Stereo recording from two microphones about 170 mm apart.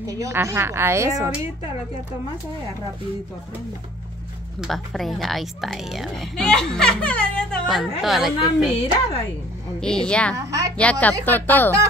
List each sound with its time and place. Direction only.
0.0 s a woman's voice: 15° right (ahead or behind)
4.6 s a woman's voice: centre (ahead or behind)
9.8 s a woman's voice: 5° left (ahead or behind)
10.3 s a woman's voice: 20° right (ahead or behind)
10.8 s speech: 10° left (ahead or behind)